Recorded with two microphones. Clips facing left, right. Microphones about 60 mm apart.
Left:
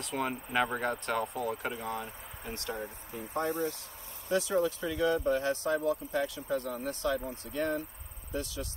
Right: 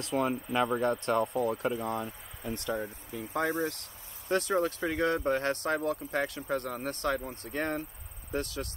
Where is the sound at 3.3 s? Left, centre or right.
Right.